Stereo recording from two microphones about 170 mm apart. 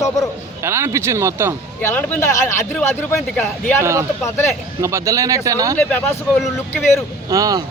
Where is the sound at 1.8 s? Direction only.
15° left (ahead or behind).